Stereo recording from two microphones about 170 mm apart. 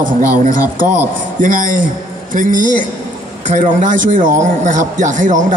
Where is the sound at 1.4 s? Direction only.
50° right (ahead or behind).